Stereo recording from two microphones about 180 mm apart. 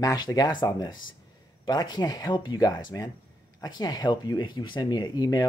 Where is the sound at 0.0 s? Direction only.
20° left (ahead or behind).